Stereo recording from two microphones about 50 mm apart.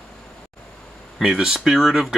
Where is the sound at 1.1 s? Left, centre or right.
Centre.